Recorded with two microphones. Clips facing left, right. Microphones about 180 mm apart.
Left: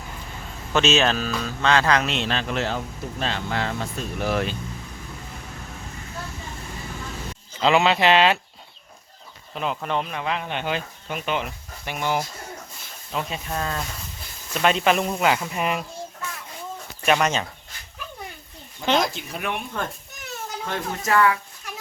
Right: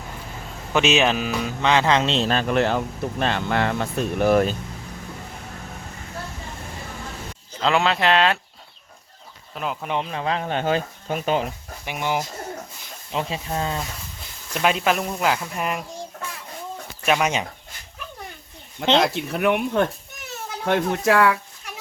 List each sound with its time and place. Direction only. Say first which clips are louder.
0.7 s speech: right 1 dB; 15° right (ahead or behind); by 2.3 s 30° right (ahead or behind)
2.3 s speech: right 5 dB; 50° right (ahead or behind)
7.6 s speech: left 2 dB; 5° left (ahead or behind)
9.6 s speech: left 1 dB; 5° right (ahead or behind)
10.1 s speech: right 3 dB; 30° right (ahead or behind)
11.9 s speech: even; 15° right (ahead or behind)
13.1 s speech: right 2 dB; 25° right (ahead or behind)
14.5 s speech: left 1 dB; 5° right (ahead or behind)
17.1 s speech: even; 5° right (ahead or behind)
18.9 s speech: right 6 dB; 65° right (ahead or behind)